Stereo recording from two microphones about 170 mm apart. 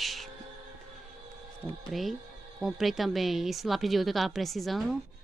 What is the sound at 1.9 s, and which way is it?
Speech, centre (ahead or behind).